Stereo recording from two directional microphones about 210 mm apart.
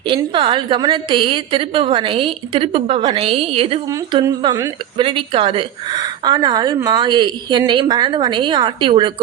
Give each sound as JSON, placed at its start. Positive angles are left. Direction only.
{"t": 0.1, "sound": "a woman's voice", "side_deg": -25}